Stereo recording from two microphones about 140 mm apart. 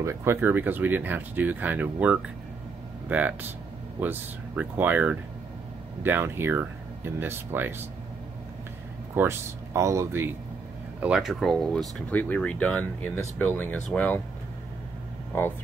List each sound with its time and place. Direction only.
0.0 s speech: 20° right (ahead or behind)
9.1 s speech: 15° right (ahead or behind)
11.0 s speech: 5° right (ahead or behind)
12.1 s speech: 10° left (ahead or behind)
15.3 s speech: 15° left (ahead or behind)